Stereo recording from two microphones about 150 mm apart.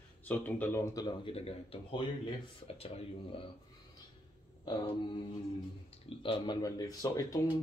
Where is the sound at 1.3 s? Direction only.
40° left (ahead or behind).